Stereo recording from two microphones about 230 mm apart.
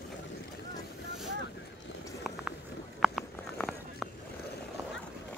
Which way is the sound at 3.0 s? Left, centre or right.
Centre.